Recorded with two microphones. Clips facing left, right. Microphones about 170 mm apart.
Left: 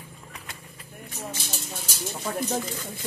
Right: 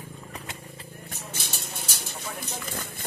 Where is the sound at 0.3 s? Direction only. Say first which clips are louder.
Right 4 dB; 30° right (ahead or behind).